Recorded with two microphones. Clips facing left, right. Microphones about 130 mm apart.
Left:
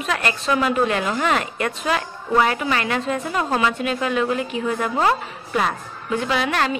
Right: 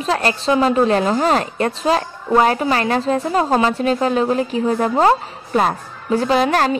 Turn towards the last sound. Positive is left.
turn(degrees=-40)  # may be behind; listen again after turning